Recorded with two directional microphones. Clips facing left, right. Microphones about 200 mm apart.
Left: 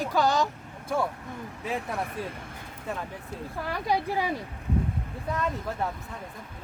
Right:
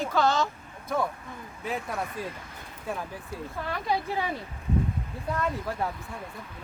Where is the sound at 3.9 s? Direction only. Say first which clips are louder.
Left 2 dB; 10° left (ahead or behind).